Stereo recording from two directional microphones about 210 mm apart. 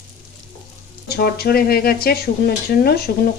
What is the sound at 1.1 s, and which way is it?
Speech, 50° left (ahead or behind).